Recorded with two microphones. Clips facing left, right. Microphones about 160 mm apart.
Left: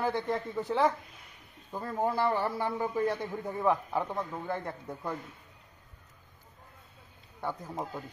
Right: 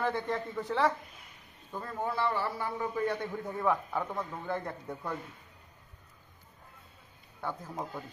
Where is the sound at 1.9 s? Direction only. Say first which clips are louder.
Left 3 dB; 40° left (ahead or behind).